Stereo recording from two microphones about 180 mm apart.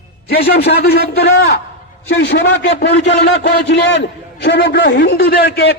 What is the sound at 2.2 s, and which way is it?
A man's voice, 75° left (ahead or behind).